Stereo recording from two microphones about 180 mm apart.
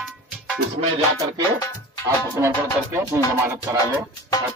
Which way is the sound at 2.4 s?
15° right (ahead or behind).